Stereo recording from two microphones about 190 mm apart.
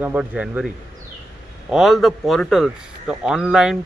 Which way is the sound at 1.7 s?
Centre (ahead or behind).